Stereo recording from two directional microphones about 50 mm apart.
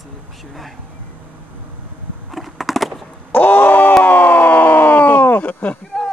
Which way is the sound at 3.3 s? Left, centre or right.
Left.